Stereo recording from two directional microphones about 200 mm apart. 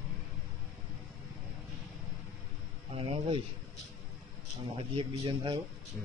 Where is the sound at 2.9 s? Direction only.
30° right (ahead or behind).